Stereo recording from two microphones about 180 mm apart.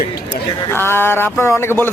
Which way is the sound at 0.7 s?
15° left (ahead or behind).